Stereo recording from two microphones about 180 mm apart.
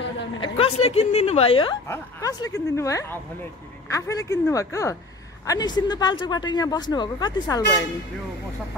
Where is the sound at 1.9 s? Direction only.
20° left (ahead or behind).